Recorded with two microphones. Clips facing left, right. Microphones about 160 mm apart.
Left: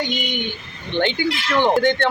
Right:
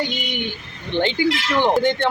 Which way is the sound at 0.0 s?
35° right (ahead or behind).